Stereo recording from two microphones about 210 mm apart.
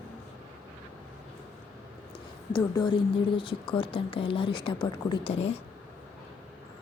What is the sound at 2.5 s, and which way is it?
Speech, 20° left (ahead or behind).